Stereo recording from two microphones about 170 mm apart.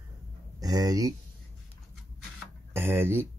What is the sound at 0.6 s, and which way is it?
Speech, 20° right (ahead or behind).